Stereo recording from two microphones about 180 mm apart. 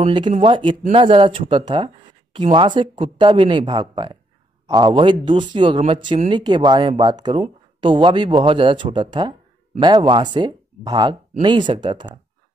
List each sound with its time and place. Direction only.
0.0 s speech: 25° right (ahead or behind)